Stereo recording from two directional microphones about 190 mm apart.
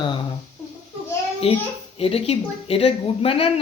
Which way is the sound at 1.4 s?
30° left (ahead or behind).